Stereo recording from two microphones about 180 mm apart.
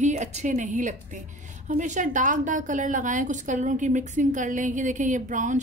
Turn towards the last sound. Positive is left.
turn(degrees=-45)  # may be behind; listen again after turning